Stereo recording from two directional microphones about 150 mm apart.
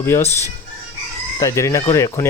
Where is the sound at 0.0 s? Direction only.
15° left (ahead or behind).